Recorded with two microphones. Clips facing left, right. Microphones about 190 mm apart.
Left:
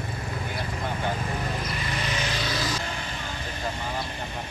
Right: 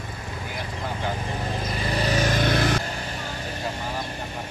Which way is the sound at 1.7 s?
35° right (ahead or behind).